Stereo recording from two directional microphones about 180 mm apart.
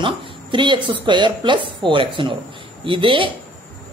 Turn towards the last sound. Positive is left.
turn(degrees=-30)  # may be behind; listen again after turning